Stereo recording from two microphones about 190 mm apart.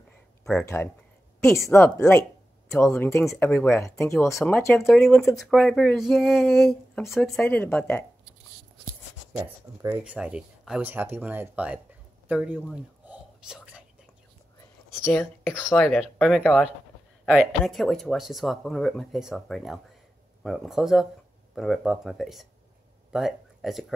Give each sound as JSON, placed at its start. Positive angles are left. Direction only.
{"t": 0.5, "sound": "speech", "side_deg": 10}
{"t": 5.0, "sound": "speech", "side_deg": 0}
{"t": 7.2, "sound": "speech", "side_deg": 10}
{"t": 9.3, "sound": "speech", "side_deg": -15}
{"t": 10.1, "sound": "speech", "side_deg": -5}
{"t": 13.0, "sound": "whispering", "side_deg": -10}
{"t": 15.0, "sound": "speech", "side_deg": 5}